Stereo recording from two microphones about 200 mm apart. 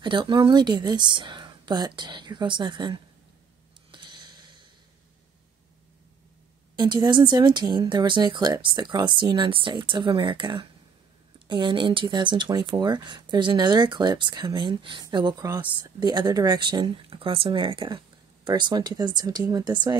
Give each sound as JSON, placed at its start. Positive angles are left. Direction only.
{"t": 0.0, "sound": "speech", "side_deg": -25}
{"t": 3.9, "sound": "a sound", "side_deg": -20}
{"t": 6.8, "sound": "speech", "side_deg": -20}